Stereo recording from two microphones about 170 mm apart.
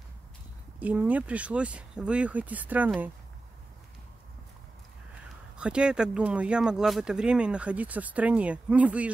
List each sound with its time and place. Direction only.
0.7 s speech: 10° right (ahead or behind)
5.6 s speech: 5° right (ahead or behind)